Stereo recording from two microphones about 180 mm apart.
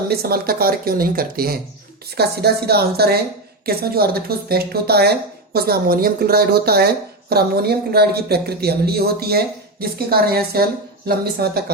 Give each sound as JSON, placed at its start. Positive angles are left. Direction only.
{"t": 0.1, "sound": "speech", "side_deg": -60}